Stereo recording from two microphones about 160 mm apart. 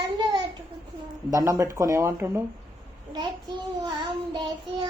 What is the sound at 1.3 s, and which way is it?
Speech, 20° right (ahead or behind).